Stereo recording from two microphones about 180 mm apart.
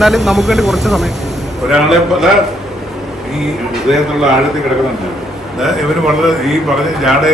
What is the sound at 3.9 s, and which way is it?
Speech, 5° right (ahead or behind).